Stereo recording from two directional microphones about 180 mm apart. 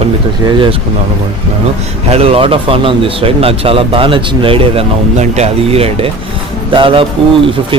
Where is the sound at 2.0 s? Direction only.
35° right (ahead or behind).